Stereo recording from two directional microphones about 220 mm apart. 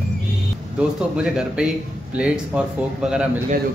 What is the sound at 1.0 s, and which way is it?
Speech, 5° right (ahead or behind).